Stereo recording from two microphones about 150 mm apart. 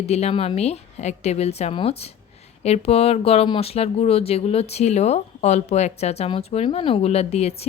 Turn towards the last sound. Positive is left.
turn(degrees=45)  # may be behind; listen again after turning